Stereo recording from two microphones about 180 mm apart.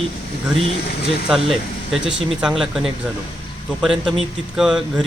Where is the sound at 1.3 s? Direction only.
5° right (ahead or behind).